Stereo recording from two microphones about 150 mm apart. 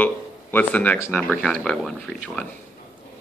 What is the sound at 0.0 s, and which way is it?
Speech, 10° left (ahead or behind).